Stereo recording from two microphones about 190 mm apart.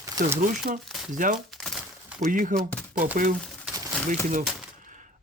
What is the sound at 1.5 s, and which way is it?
Crumpling, centre (ahead or behind).